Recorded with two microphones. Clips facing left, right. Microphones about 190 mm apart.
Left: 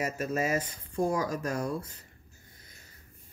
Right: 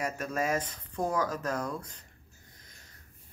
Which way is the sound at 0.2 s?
5° left (ahead or behind).